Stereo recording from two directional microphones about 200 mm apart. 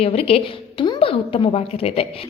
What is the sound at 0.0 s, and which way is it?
A woman's voice, 30° left (ahead or behind).